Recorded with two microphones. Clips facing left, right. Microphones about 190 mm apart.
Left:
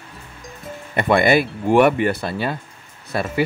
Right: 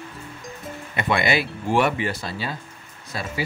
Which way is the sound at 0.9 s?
50° left (ahead or behind).